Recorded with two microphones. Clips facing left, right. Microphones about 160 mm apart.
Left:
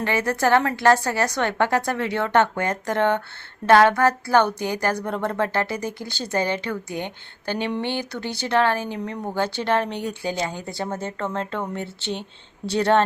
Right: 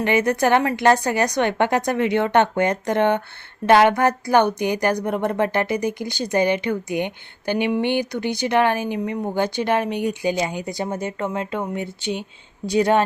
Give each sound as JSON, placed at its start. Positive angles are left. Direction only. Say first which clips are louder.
{"t": 0.0, "sound": "speech", "louder": "right 3 dB", "side_deg": -20}